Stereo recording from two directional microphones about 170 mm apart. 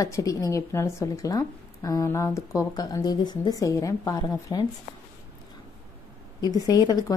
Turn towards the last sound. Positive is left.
turn(degrees=25)  # may be behind; listen again after turning